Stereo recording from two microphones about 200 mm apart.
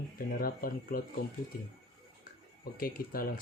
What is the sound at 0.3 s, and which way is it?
Speech, 45° left (ahead or behind).